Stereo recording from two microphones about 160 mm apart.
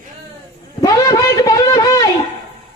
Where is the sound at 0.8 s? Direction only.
25° left (ahead or behind).